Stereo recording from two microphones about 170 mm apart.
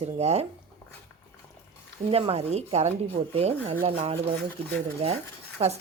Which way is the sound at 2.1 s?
35° right (ahead or behind).